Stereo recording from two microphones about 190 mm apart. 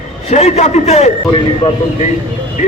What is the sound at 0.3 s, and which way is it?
Speech, 35° left (ahead or behind).